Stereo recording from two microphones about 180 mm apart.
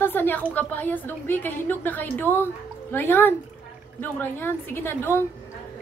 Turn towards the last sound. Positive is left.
turn(degrees=15)  # may be behind; listen again after turning